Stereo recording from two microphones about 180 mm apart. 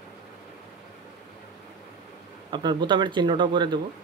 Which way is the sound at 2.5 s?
25° right (ahead or behind).